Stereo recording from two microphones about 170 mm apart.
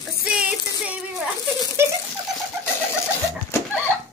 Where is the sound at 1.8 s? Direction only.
15° right (ahead or behind).